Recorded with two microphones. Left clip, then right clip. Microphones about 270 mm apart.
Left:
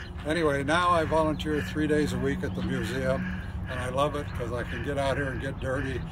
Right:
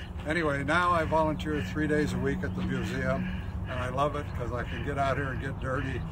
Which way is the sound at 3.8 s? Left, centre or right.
Centre.